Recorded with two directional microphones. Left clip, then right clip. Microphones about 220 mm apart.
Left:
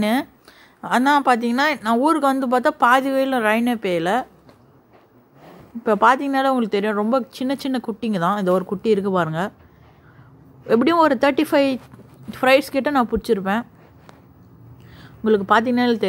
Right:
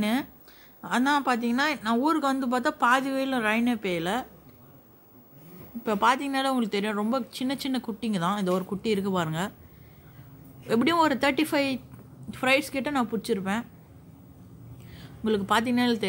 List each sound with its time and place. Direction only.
0.0 s speech: 20° left (ahead or behind)
5.9 s speech: 15° left (ahead or behind)
10.7 s speech: 10° left (ahead or behind)
15.0 s speech: 15° left (ahead or behind)